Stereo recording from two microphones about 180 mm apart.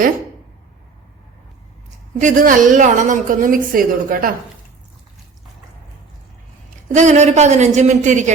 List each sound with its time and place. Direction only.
2.2 s a woman's voice: 45° right (ahead or behind)
6.8 s a woman's voice: 40° right (ahead or behind)